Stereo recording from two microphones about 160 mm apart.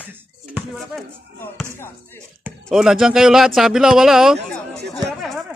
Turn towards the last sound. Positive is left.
turn(degrees=0)  # may be behind; listen again after turning